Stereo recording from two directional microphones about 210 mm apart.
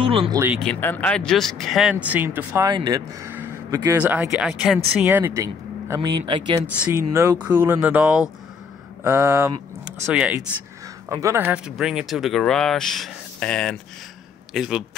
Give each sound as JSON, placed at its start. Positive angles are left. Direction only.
{"t": 0.0, "sound": "speech", "side_deg": -25}
{"t": 0.6, "sound": "speech", "side_deg": 5}